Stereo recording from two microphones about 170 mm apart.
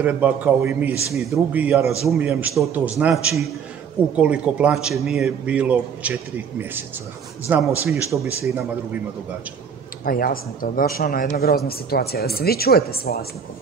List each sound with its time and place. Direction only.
0.0 s a man's voice: 10° right (ahead or behind)
7.4 s a man's voice: 15° right (ahead or behind)
10.0 s a woman's voice: 60° left (ahead or behind)